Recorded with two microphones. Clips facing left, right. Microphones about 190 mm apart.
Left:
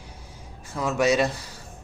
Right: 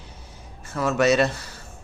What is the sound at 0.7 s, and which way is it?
Speech, 15° left (ahead or behind).